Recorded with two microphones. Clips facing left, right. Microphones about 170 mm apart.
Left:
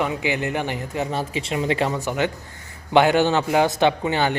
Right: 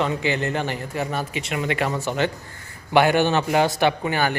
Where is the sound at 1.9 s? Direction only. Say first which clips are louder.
Even; 15° left (ahead or behind).